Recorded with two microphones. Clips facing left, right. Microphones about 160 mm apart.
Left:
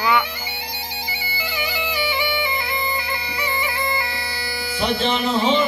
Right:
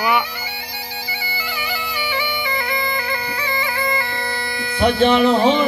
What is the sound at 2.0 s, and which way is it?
Bagpipes, 15° left (ahead or behind).